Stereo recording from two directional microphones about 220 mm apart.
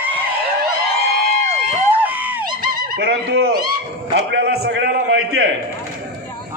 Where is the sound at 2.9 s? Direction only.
45° right (ahead or behind).